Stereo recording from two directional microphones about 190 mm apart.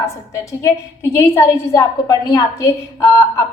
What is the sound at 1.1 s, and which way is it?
A woman's voice, 15° left (ahead or behind).